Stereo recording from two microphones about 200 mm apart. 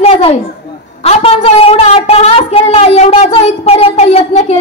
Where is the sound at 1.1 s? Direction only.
30° left (ahead or behind).